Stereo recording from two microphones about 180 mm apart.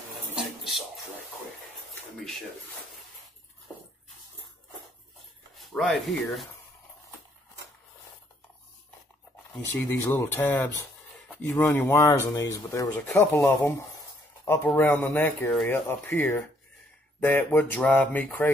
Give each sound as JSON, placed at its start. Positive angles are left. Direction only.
{"t": 0.4, "sound": "a sound", "side_deg": 0}
{"t": 5.6, "sound": "speech", "side_deg": 0}
{"t": 9.7, "sound": "speech", "side_deg": 10}